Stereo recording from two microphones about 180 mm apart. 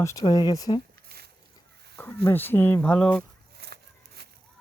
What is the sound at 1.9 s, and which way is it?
Speech, 10° left (ahead or behind).